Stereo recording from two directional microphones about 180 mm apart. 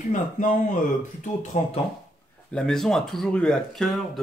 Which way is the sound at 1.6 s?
45° left (ahead or behind).